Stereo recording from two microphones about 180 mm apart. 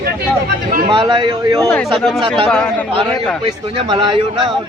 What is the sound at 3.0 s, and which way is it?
A man's voice, 30° right (ahead or behind).